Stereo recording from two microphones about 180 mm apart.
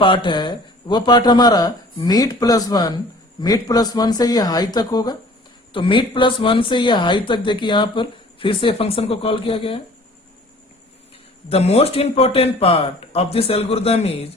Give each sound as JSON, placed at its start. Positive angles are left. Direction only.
{"t": 0.0, "sound": "speech", "side_deg": 25}
{"t": 11.4, "sound": "speech", "side_deg": 35}